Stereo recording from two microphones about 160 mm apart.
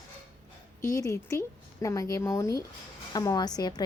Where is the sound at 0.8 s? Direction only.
20° left (ahead or behind).